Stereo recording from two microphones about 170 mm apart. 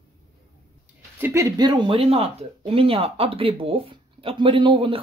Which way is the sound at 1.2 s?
15° right (ahead or behind).